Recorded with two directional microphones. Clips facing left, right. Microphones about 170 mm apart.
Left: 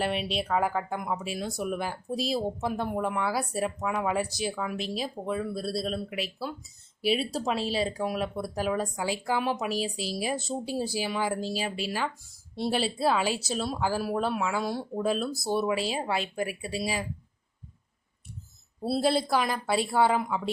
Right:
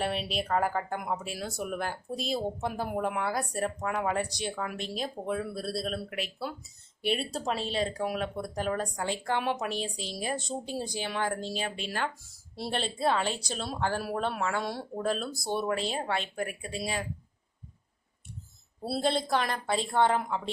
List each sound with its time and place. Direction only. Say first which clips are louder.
0.0 s speech: left 2 dB; centre (ahead or behind)
18.9 s speech: left 3 dB; 5° left (ahead or behind)